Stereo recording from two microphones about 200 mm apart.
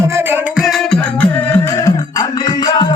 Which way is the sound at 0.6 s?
Centre (ahead or behind).